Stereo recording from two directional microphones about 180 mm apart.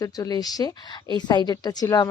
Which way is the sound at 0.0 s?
20° left (ahead or behind).